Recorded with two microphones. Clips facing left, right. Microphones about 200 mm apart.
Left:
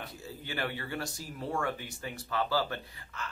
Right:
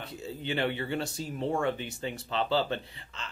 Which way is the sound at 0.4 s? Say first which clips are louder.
Right 6 dB; 25° right (ahead or behind).